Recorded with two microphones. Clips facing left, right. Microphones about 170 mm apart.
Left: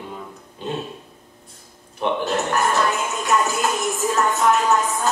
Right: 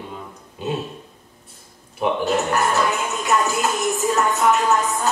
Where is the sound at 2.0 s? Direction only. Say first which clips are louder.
Right 2 dB; 5° right (ahead or behind).